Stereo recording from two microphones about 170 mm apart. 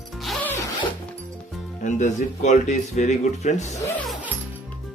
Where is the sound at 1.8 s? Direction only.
45° left (ahead or behind).